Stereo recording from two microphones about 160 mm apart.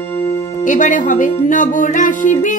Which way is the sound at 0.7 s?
55° left (ahead or behind).